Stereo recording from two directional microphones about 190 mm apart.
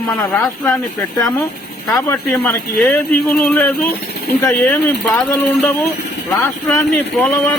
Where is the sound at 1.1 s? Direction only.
20° left (ahead or behind).